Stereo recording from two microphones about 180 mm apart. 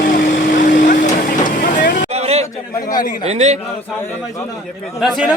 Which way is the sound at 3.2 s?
40° right (ahead or behind).